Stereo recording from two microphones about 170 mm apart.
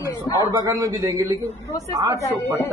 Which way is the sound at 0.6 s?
20° right (ahead or behind).